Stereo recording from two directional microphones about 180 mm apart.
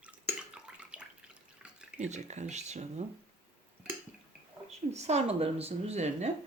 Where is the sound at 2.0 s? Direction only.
40° right (ahead or behind).